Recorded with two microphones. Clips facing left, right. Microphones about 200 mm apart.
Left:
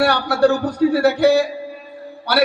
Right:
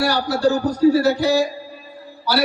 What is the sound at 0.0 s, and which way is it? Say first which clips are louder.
A man's voice: left 3 dB; 60° left (ahead or behind).